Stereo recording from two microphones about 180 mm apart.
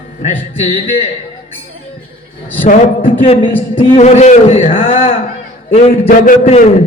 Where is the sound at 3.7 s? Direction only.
30° left (ahead or behind).